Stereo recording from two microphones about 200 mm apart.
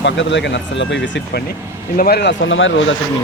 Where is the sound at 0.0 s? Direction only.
65° left (ahead or behind).